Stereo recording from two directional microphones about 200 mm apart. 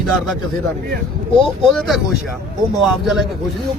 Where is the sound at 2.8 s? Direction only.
Centre (ahead or behind).